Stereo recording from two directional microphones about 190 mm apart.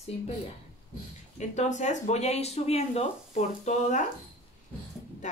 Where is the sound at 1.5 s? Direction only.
40° left (ahead or behind).